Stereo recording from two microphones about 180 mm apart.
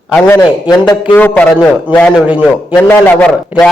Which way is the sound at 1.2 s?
10° left (ahead or behind).